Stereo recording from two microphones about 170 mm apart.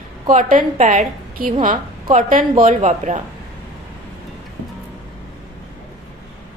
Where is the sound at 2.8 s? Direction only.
40° right (ahead or behind).